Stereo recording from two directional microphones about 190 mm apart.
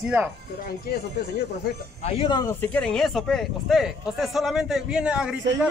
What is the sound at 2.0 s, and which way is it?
Speech, 30° left (ahead or behind).